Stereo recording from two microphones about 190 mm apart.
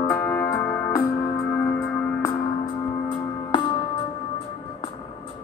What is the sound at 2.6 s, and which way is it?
Music, 25° left (ahead or behind).